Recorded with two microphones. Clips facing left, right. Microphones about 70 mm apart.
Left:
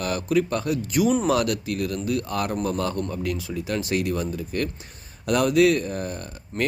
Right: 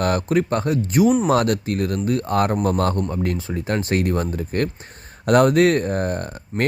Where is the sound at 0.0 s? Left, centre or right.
Right.